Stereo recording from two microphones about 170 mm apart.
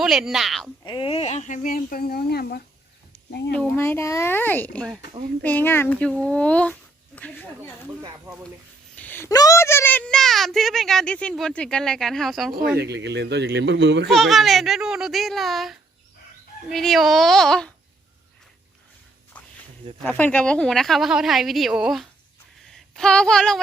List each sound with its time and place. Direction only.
0.0 s a woman's voice: centre (ahead or behind)
0.9 s speech: 30° left (ahead or behind); by 2.6 s 65° left (ahead or behind)
3.5 s a child's voice: 15° left (ahead or behind)
9.0 s a woman's voice: 10° left (ahead or behind)
12.8 s speech: 85° right
14.1 s a woman's voice: centre (ahead or behind)
20.0 s a woman's voice: 10° left (ahead or behind)